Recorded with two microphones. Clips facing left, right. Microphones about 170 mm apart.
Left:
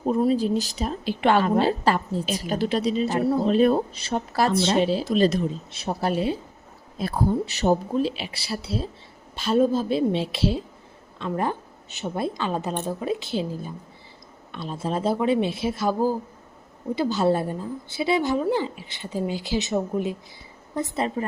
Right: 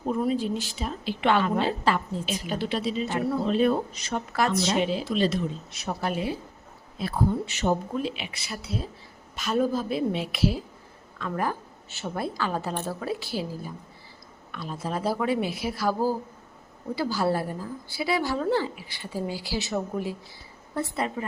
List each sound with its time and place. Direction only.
0.1 s a woman's voice: 35° left (ahead or behind)
5.7 s a woman's voice: 30° left (ahead or behind)